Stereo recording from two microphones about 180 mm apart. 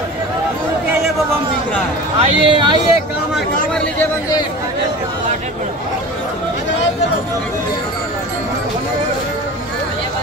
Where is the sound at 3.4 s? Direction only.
5° left (ahead or behind).